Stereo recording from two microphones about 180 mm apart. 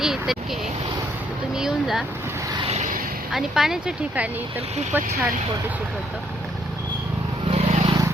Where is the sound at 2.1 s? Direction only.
15° right (ahead or behind).